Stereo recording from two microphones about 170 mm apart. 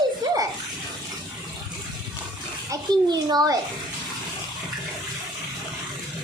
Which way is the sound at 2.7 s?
25° right (ahead or behind).